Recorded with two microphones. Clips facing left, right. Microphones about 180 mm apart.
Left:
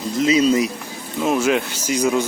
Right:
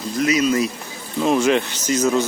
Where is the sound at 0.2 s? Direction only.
25° left (ahead or behind).